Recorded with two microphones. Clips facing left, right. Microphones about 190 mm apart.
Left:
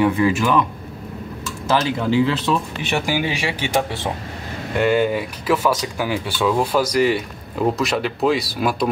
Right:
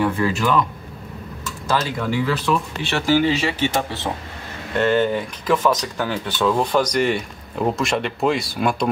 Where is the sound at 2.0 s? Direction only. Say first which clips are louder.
Left 4 dB; 25° left (ahead or behind).